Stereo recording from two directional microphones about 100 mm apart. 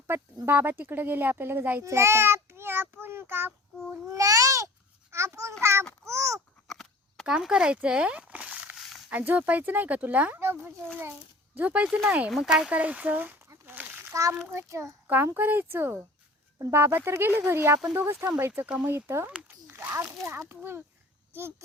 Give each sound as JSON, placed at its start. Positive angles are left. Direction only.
{"t": 0.4, "sound": "a child's voice", "side_deg": -20}
{"t": 4.1, "sound": "a child's voice", "side_deg": -35}
{"t": 6.7, "sound": "a sound", "side_deg": 0}
{"t": 7.3, "sound": "speech", "side_deg": -10}
{"t": 13.5, "sound": "a sound", "side_deg": -20}
{"t": 14.5, "sound": "a child's voice", "side_deg": -30}
{"t": 19.3, "sound": "a sound", "side_deg": -10}
{"t": 19.7, "sound": "splash", "side_deg": -25}
{"t": 20.5, "sound": "a child's voice", "side_deg": -25}